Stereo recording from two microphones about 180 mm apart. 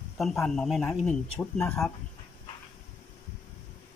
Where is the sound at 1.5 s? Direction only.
15° left (ahead or behind).